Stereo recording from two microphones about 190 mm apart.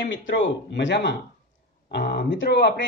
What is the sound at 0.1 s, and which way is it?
Speech, 70° left (ahead or behind).